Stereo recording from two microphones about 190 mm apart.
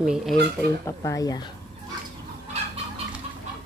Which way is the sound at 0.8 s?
15° left (ahead or behind).